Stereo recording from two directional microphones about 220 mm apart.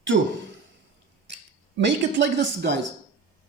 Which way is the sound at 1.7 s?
55° right (ahead or behind).